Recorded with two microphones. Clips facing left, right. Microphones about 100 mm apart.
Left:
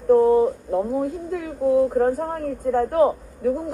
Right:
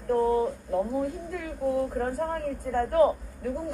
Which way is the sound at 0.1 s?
25° left (ahead or behind).